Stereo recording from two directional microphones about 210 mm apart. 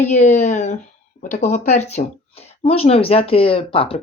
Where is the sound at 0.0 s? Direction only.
35° left (ahead or behind).